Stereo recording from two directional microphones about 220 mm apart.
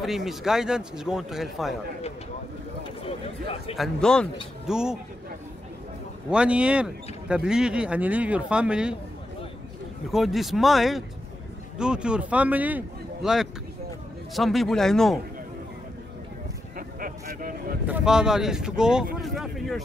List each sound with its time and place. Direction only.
0.0 s speech: centre (ahead or behind)
3.1 s speech: 25° left (ahead or behind)
3.7 s speech: centre (ahead or behind)
6.3 s speech: 5° right (ahead or behind)
10.1 s speech: centre (ahead or behind)
16.7 s a sound: 40° right (ahead or behind)
17.8 s speech: 5° right (ahead or behind)